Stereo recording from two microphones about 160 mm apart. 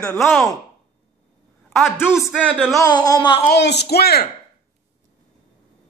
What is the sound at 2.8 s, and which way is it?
Speech, 25° left (ahead or behind).